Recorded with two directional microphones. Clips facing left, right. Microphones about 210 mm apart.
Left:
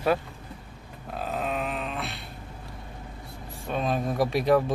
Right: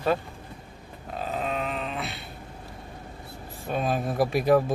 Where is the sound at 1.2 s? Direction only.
Centre (ahead or behind).